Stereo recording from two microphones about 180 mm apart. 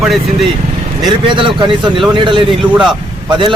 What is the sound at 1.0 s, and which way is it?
Speech, 25° right (ahead or behind).